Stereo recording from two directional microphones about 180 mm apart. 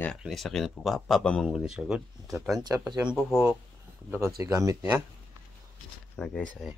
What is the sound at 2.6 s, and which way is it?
Speech, 20° right (ahead or behind).